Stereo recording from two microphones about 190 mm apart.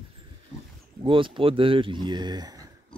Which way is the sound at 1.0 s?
25° right (ahead or behind).